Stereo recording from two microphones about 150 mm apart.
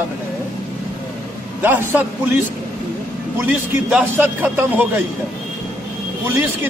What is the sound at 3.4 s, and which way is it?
A man's voice, 10° right (ahead or behind).